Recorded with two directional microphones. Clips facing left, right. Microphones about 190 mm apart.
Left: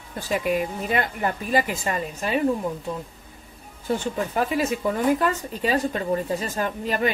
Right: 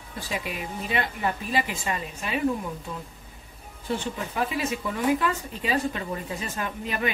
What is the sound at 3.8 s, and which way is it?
Speech, 45° left (ahead or behind).